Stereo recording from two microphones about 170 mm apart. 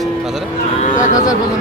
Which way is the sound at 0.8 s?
50° left (ahead or behind).